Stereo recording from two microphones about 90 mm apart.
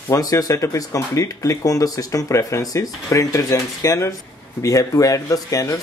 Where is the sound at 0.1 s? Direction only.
40° left (ahead or behind).